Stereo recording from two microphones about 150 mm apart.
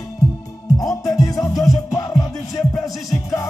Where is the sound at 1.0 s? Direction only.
25° left (ahead or behind).